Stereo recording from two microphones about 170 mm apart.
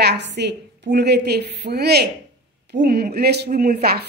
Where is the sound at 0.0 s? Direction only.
80° right.